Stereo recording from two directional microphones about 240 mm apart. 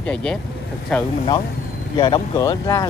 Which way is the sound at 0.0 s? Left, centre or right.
Centre.